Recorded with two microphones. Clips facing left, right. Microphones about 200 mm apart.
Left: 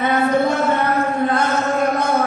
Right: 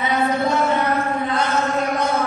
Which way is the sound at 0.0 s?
50° left (ahead or behind).